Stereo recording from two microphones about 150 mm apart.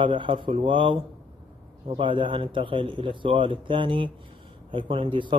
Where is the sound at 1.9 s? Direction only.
35° right (ahead or behind).